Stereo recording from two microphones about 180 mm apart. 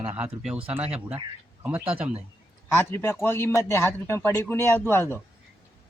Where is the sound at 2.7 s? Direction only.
15° left (ahead or behind).